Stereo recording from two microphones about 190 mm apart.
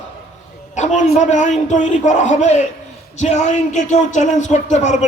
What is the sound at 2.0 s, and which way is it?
Speech, 40° left (ahead or behind).